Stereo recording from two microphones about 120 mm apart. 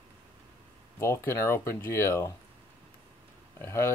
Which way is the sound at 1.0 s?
20° left (ahead or behind).